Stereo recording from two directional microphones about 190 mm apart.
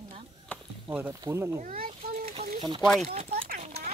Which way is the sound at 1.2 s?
15° right (ahead or behind).